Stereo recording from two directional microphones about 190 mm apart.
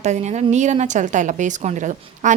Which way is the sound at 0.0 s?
40° right (ahead or behind).